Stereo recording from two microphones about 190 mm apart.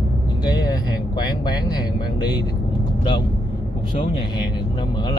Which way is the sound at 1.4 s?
20° left (ahead or behind).